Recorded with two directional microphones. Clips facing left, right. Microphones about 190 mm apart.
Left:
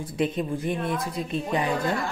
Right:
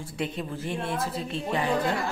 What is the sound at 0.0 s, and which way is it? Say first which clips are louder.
Speech: left 6 dB; 20° left (ahead or behind).